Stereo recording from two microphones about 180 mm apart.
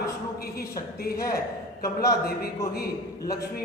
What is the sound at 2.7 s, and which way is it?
Speech, 60° left (ahead or behind).